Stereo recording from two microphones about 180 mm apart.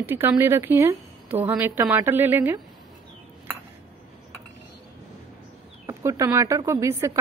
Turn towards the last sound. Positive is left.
turn(degrees=-15)  # may be behind; listen again after turning